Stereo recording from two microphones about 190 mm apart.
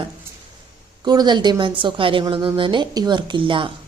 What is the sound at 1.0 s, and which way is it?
A woman's voice, 20° right (ahead or behind).